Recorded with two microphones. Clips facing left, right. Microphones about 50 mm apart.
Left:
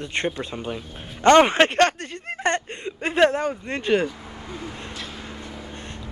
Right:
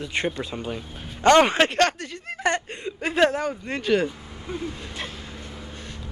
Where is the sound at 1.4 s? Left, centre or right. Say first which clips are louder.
Left 2 dB; left.